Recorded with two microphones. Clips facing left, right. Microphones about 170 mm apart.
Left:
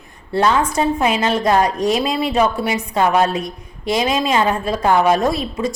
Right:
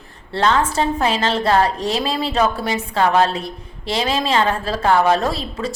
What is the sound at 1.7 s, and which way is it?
Speech, 25° right (ahead or behind).